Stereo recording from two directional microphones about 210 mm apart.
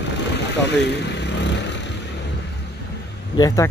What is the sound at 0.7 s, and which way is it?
Vehicle, 55° left (ahead or behind).